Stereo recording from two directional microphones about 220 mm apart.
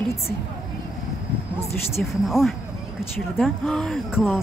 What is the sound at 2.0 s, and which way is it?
Speech, centre (ahead or behind).